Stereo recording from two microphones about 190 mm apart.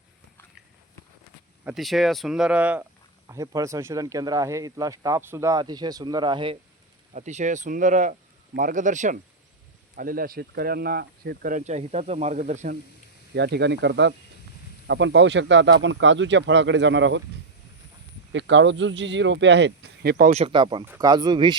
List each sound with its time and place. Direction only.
1.6 s speech: centre (ahead or behind)
3.2 s speech: 15° right (ahead or behind)
7.1 s speech: 40° right (ahead or behind)
13.3 s speech: 60° right (ahead or behind)
18.3 s speech: 70° right (ahead or behind); by 20.3 s 50° right (ahead or behind)
20.3 s speech: 30° right (ahead or behind)